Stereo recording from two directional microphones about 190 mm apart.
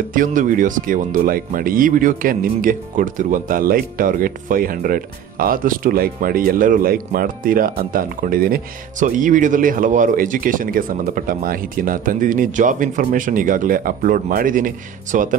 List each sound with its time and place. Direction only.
0.1 s speech: 45° right (ahead or behind)